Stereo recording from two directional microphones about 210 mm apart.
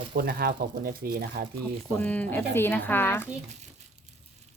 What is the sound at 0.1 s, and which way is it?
Speech, 45° right (ahead or behind).